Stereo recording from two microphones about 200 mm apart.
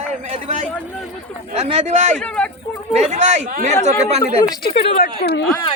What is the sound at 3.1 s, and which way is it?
Speech, 35° right (ahead or behind).